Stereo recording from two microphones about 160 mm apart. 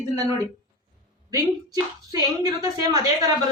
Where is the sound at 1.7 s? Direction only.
25° right (ahead or behind).